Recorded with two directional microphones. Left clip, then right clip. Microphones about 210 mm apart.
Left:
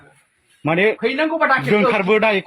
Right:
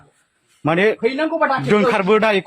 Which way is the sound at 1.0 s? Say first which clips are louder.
Even; centre (ahead or behind).